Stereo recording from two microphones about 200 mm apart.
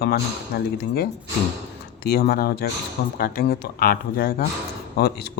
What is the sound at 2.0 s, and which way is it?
Speech, 50° left (ahead or behind).